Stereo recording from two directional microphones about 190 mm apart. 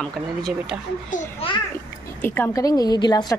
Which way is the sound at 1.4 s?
30° left (ahead or behind).